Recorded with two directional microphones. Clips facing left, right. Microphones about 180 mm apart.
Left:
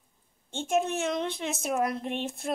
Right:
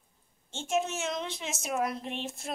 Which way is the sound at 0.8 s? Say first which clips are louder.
Left 5 dB; 55° left (ahead or behind).